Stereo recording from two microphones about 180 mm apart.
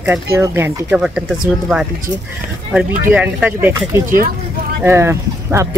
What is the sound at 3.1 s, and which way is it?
Speech, 10° right (ahead or behind).